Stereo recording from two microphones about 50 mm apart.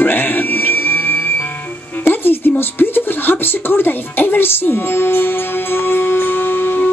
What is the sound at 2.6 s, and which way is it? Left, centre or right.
Speech, left.